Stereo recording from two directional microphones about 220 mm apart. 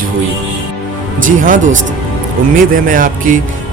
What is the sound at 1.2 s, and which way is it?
Speech, 35° right (ahead or behind).